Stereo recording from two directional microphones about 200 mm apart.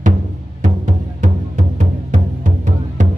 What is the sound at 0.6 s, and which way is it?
Music, 35° right (ahead or behind).